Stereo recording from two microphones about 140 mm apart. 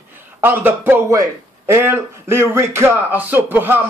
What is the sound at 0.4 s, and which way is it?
A man's voice, 15° right (ahead or behind).